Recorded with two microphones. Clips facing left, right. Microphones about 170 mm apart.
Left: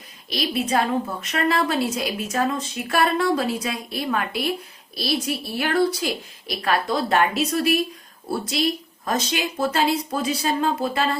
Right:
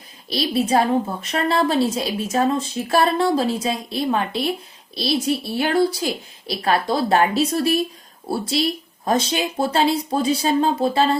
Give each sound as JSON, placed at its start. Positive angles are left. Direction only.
{"t": 0.3, "sound": "a woman's voice", "side_deg": -35}